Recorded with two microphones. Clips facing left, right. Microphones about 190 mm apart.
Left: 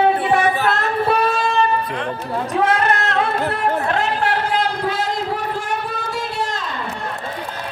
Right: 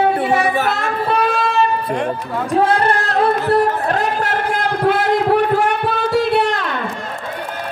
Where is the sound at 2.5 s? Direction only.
30° right (ahead or behind); by 6.9 s 65° right (ahead or behind).